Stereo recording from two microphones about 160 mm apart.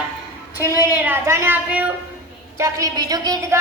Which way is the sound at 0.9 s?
15° right (ahead or behind).